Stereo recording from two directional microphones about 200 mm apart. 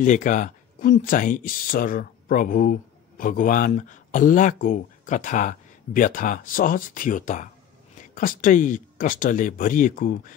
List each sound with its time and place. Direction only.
0.0 s speech: 40° left (ahead or behind)